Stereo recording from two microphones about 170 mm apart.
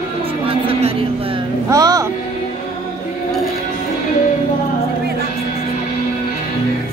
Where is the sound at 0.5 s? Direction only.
35° right (ahead or behind).